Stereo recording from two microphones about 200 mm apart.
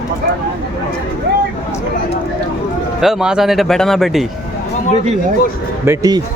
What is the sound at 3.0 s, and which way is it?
Speech, centre (ahead or behind).